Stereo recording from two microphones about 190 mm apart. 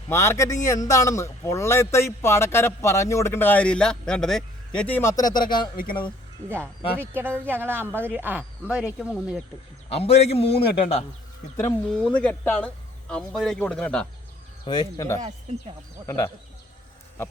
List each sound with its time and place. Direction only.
0.1 s a man's voice: 15° left (ahead or behind)
6.5 s speech: 10° right (ahead or behind)
9.9 s a man's voice: 35° left (ahead or behind)
11.9 s speech: 5° left (ahead or behind)
14.6 s a man's voice: 20° left (ahead or behind)